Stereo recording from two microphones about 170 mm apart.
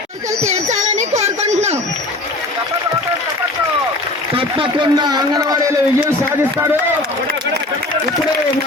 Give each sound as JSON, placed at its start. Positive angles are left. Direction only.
{"t": 0.4, "sound": "speech", "side_deg": -45}
{"t": 0.9, "sound": "a sound", "side_deg": -40}
{"t": 4.4, "sound": "a man's voice", "side_deg": -30}